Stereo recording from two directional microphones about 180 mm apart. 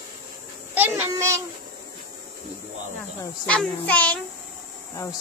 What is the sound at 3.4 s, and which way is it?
Speech, 10° left (ahead or behind).